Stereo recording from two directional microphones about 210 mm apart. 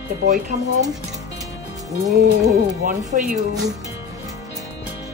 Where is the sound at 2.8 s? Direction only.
40° right (ahead or behind).